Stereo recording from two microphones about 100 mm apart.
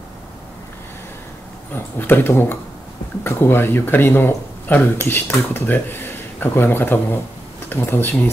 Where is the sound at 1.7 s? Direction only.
20° left (ahead or behind).